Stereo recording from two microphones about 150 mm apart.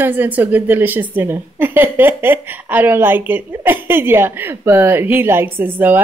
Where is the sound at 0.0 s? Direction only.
10° right (ahead or behind).